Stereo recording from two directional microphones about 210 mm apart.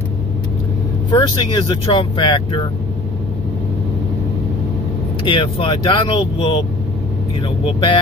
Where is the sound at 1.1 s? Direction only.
20° left (ahead or behind).